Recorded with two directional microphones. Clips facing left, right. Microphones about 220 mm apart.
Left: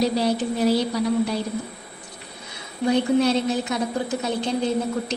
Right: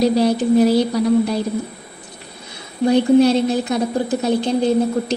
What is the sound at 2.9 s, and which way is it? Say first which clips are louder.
Speech: right 6 dB; 35° right (ahead or behind).